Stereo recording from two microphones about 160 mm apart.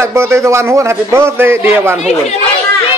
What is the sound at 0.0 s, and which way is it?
A man's voice, 15° right (ahead or behind).